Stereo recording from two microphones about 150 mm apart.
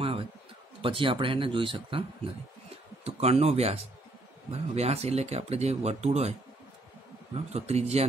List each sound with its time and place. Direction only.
0.8 s speech: 35° right (ahead or behind)
7.3 s speech: 45° right (ahead or behind)